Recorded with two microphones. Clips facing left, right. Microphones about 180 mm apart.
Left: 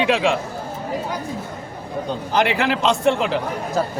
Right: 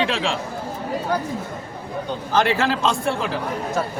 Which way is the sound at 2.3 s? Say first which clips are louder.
Even; 15° left (ahead or behind).